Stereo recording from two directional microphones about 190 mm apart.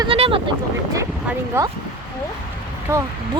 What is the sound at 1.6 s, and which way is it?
Speech, 15° right (ahead or behind).